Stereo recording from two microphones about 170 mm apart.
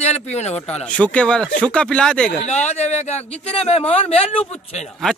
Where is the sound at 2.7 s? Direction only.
40° left (ahead or behind).